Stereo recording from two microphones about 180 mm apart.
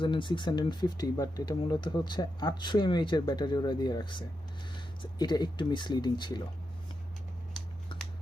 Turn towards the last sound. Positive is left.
turn(degrees=25)  # may be behind; listen again after turning